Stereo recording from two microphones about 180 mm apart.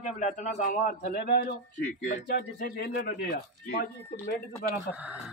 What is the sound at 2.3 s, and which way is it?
Speech, 65° left (ahead or behind).